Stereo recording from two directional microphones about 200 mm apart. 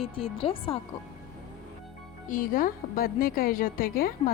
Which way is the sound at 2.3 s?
45° left (ahead or behind).